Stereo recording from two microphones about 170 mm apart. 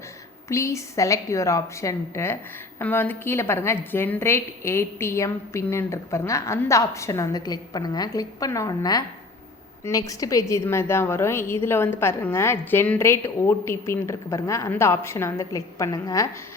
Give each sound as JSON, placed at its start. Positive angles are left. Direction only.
{"t": 0.4, "sound": "a woman's voice", "side_deg": 15}